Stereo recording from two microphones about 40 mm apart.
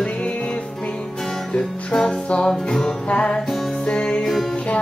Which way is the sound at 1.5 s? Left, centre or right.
Left.